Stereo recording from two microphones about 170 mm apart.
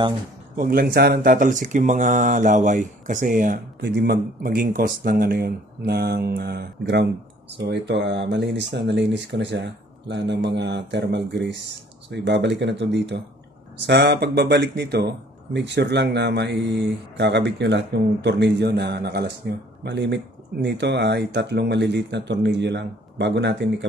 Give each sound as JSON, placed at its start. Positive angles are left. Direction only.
{"t": 0.6, "sound": "speech", "side_deg": -60}
{"t": 3.8, "sound": "speech", "side_deg": -75}
{"t": 7.5, "sound": "speech", "side_deg": -90}
{"t": 19.8, "sound": "speech", "side_deg": -85}